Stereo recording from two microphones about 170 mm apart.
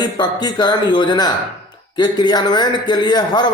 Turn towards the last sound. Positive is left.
turn(degrees=25)  # may be behind; listen again after turning